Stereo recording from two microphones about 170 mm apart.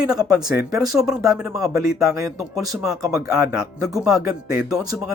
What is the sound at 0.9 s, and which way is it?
Speech, centre (ahead or behind).